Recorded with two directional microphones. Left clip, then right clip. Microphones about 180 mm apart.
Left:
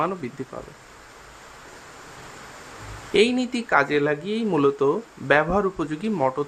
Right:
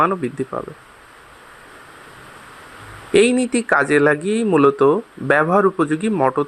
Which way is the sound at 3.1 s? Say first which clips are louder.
Right 5 dB; 25° right (ahead or behind).